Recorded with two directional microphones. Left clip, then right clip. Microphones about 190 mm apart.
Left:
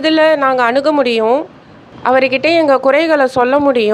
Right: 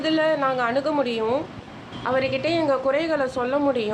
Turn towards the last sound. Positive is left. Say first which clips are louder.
# left 11 dB
turn(degrees=50)  # may be behind; listen again after turning